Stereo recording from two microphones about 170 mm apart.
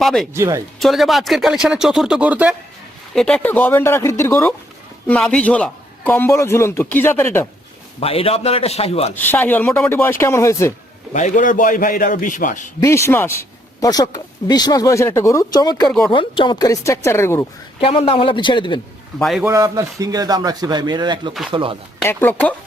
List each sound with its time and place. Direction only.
0.0 s speech: centre (ahead or behind)
0.3 s speech: 15° right (ahead or behind)
0.8 s speech: centre (ahead or behind)
3.2 s a man's voice: 5° left (ahead or behind)
7.9 s a man's voice: 35° left (ahead or behind)
9.1 s a man's voice: 10° left (ahead or behind)
11.1 s a man's voice: 50° left (ahead or behind)
12.8 s a man's voice: 15° left (ahead or behind)
15.9 s speech: centre (ahead or behind)
16.1 s speech: 30° left (ahead or behind)
17.7 s a man's voice: 35° left (ahead or behind)
19.4 s a man's voice: 20° right (ahead or behind)
22.0 s a man's voice: 10° left (ahead or behind)